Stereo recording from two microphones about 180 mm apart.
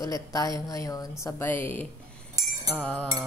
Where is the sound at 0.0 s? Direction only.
20° left (ahead or behind).